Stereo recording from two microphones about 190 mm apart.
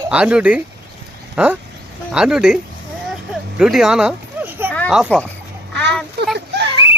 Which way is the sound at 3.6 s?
5° right (ahead or behind).